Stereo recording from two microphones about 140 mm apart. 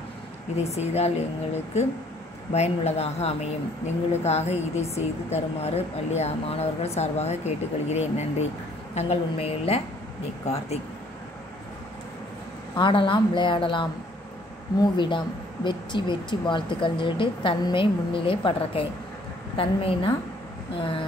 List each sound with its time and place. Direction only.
0.6 s speech: 50° left (ahead or behind)
12.7 s speech: 35° left (ahead or behind)